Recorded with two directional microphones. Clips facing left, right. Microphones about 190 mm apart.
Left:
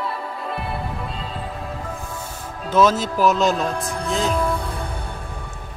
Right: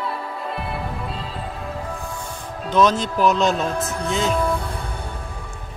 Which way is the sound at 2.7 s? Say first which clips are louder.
Left 1 dB; 5° left (ahead or behind).